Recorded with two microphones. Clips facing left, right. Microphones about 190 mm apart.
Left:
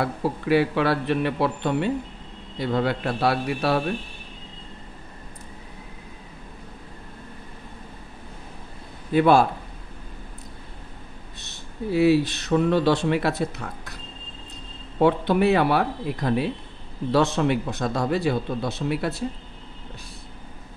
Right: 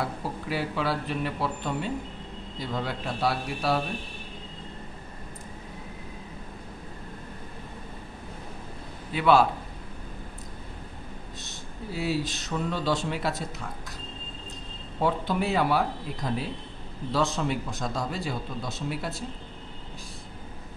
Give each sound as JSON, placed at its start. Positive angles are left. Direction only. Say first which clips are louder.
{"t": 0.0, "sound": "a man's voice", "louder": "left 6 dB", "side_deg": 65}
{"t": 9.1, "sound": "a man's voice", "louder": "left 4 dB", "side_deg": 50}
{"t": 11.4, "sound": "speech", "louder": "left 11 dB", "side_deg": 65}
{"t": 15.0, "sound": "speech", "louder": "left 7 dB", "side_deg": 65}